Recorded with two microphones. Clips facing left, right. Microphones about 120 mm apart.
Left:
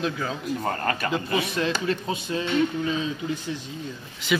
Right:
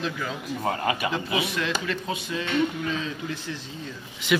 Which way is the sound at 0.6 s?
10° right (ahead or behind).